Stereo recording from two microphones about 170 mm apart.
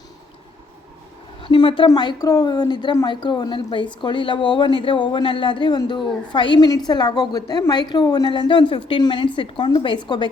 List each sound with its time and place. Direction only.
1.4 s a man's voice: 30° left (ahead or behind)